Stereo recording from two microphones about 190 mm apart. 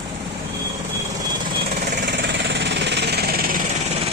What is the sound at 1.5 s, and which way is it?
Engine, 55° right (ahead or behind).